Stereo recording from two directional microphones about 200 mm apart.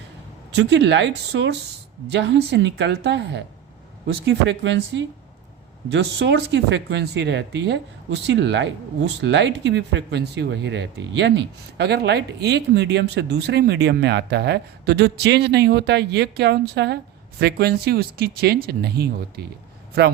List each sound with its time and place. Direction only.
0.5 s speech: 60° right (ahead or behind)